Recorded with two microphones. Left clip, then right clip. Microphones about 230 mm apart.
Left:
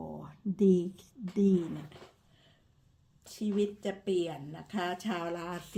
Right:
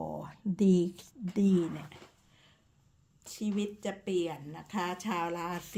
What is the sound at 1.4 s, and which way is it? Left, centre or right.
Speech, right.